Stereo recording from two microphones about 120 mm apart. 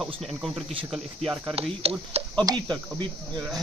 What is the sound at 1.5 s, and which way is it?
Speech, 55° right (ahead or behind).